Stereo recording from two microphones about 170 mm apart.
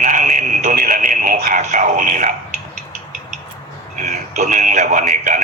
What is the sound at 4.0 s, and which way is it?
Speech, 45° right (ahead or behind).